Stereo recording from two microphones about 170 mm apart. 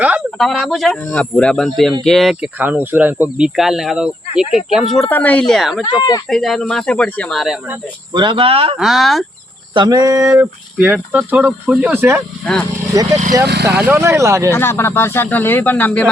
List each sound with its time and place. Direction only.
0.3 s speech: centre (ahead or behind)
5.8 s speech: 25° left (ahead or behind)
6.2 s speech: centre (ahead or behind)
8.1 s speech: 30° right (ahead or behind)
8.8 s speech: centre (ahead or behind)
9.7 s mantra: 25° right (ahead or behind)
10.2 s speech: 10° right (ahead or behind)
12.9 s mantra: 20° right (ahead or behind)
13.7 s speech: 10° right (ahead or behind)
14.5 s speech: 15° left (ahead or behind)